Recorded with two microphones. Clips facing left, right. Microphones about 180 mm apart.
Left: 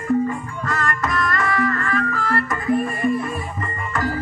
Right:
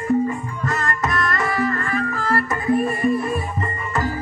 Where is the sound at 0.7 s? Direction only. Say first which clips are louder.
Even; 20° right (ahead or behind).